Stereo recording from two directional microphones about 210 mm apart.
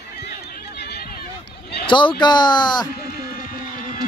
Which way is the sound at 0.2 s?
50° left (ahead or behind).